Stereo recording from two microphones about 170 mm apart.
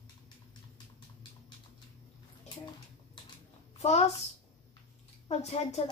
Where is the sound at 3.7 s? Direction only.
40° left (ahead or behind).